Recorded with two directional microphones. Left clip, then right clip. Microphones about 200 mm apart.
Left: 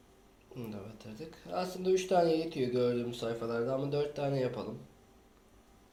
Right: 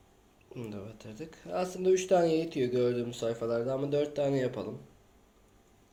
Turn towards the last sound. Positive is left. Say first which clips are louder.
# right 3 dB
turn(degrees=-50)  # may be behind; listen again after turning